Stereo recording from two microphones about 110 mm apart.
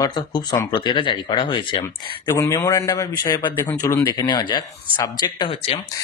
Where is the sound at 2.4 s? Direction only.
35° left (ahead or behind).